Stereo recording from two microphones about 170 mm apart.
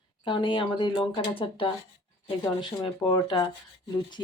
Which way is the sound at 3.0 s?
25° left (ahead or behind).